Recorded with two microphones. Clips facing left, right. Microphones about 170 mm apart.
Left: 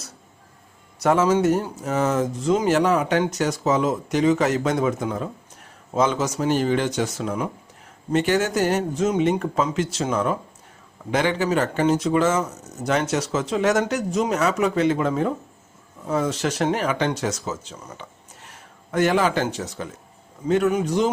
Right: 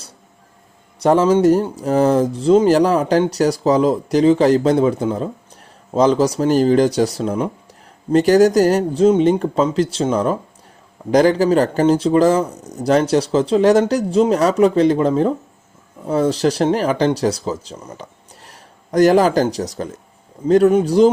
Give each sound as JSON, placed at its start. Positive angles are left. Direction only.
{"t": 1.0, "sound": "speech", "side_deg": -30}